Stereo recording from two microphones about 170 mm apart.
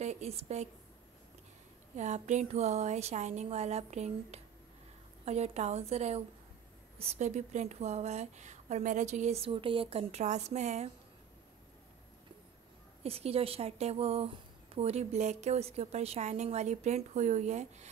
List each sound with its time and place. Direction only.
0.0 s a woman's voice: 40° right (ahead or behind)
2.0 s a woman's voice: 45° right (ahead or behind)
13.0 s a woman's voice: 35° right (ahead or behind)